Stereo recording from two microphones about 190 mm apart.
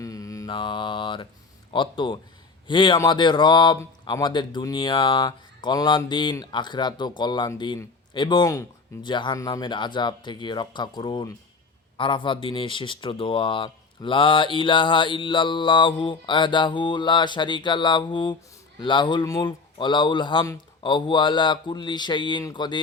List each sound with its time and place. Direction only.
0.0 s mantra: 15° left (ahead or behind)
1.7 s speech: 25° left (ahead or behind)